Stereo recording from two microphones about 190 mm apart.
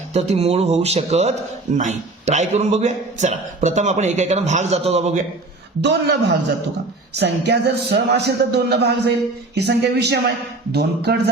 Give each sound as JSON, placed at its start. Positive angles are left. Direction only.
{"t": 0.1, "sound": "a man's voice", "side_deg": -35}
{"t": 5.8, "sound": "speech", "side_deg": -65}
{"t": 7.2, "sound": "speech", "side_deg": -60}